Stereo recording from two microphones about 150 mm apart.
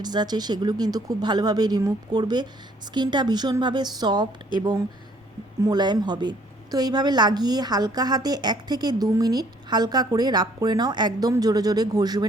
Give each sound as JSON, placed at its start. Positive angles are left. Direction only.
{"t": 0.0, "sound": "a woman's voice", "side_deg": -30}
{"t": 5.6, "sound": "a woman's voice", "side_deg": -30}